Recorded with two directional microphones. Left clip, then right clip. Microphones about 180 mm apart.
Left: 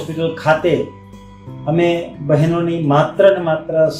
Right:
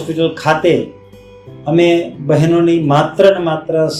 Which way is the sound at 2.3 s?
55° right (ahead or behind).